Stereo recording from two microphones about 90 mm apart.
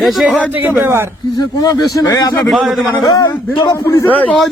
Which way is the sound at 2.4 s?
Centre (ahead or behind).